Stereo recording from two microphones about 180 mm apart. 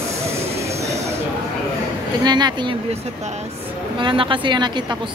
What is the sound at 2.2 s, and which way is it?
Speech, 25° right (ahead or behind).